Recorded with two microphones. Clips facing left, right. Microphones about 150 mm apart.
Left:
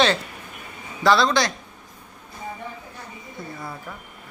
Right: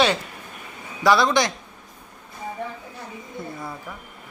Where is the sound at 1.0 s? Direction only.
15° right (ahead or behind).